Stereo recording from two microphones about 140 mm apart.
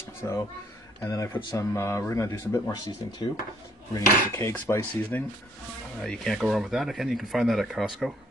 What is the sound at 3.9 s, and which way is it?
Dishes, 20° left (ahead or behind).